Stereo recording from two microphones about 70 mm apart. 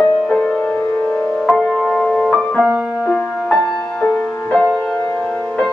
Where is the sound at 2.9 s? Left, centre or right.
Centre.